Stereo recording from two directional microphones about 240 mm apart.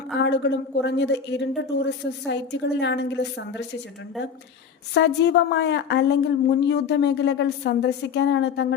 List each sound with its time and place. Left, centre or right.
0.2 s a woman's voice: left
4.9 s a woman's voice: left